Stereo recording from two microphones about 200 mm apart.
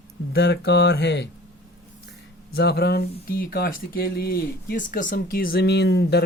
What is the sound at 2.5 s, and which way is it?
Speech, 55° left (ahead or behind).